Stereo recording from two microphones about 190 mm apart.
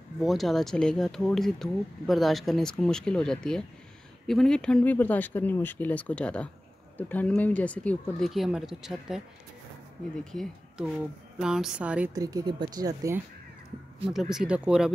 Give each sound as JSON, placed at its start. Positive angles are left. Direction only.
{"t": 0.2, "sound": "speech", "side_deg": 0}
{"t": 10.3, "sound": "speech", "side_deg": 0}
{"t": 12.1, "sound": "speech", "side_deg": -20}
{"t": 14.0, "sound": "speech", "side_deg": -5}